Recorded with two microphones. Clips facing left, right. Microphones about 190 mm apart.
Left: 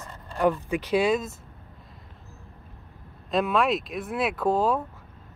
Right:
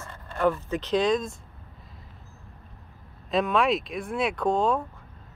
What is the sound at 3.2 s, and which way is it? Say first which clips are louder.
A woman's voice: even; centre (ahead or behind).